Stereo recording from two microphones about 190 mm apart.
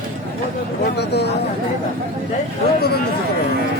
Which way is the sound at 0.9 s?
60° left (ahead or behind).